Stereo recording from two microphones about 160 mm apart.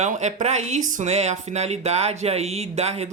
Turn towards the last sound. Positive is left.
turn(degrees=-40)  # may be behind; listen again after turning